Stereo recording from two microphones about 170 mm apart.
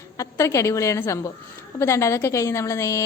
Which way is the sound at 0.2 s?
15° left (ahead or behind).